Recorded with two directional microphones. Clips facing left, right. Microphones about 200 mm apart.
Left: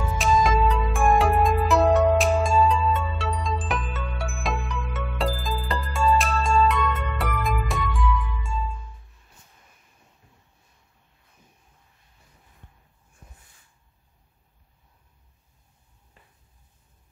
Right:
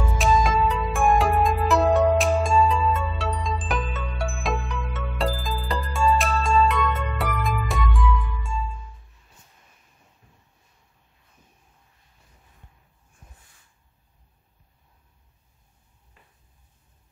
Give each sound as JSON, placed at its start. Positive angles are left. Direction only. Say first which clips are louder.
{"t": 0.2, "sound": "music", "louder": "even", "side_deg": 0}